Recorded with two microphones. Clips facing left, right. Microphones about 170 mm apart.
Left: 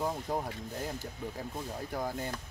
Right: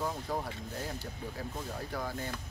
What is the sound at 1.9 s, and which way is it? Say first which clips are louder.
Speech: left 3 dB; 15° left (ahead or behind).